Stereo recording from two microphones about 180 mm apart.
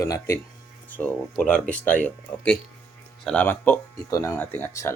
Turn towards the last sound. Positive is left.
turn(degrees=15)  # may be behind; listen again after turning